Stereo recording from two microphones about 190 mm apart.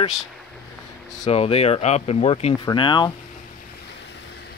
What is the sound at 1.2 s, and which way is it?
Speech, 30° left (ahead or behind).